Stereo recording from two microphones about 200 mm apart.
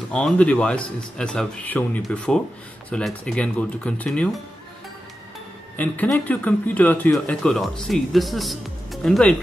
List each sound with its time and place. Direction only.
0.1 s speech: 5° left (ahead or behind)
5.8 s speech: 10° left (ahead or behind)